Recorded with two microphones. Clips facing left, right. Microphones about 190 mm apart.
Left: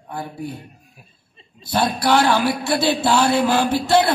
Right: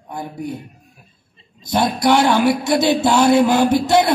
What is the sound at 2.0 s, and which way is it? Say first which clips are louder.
Speech: right 3 dB; 20° right (ahead or behind).